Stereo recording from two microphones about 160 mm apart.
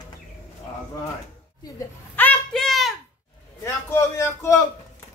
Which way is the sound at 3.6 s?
20° left (ahead or behind).